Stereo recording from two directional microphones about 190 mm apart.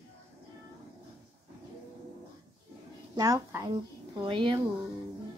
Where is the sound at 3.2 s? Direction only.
20° right (ahead or behind).